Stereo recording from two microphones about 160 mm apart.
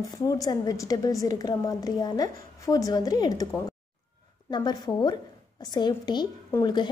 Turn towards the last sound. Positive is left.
turn(degrees=25)  # may be behind; listen again after turning